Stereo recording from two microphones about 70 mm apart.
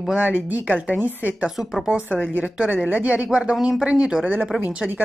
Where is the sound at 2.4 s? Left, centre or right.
Right.